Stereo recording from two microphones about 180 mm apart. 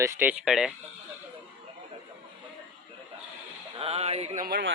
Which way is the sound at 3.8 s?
35° right (ahead or behind).